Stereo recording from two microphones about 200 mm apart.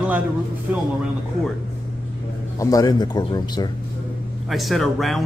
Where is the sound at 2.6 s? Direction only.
15° left (ahead or behind).